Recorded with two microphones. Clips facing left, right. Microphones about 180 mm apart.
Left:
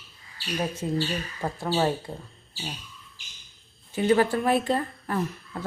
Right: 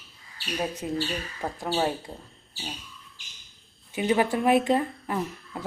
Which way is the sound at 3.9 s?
15° right (ahead or behind).